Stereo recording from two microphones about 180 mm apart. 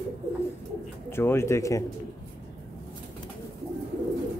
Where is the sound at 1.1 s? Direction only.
15° left (ahead or behind).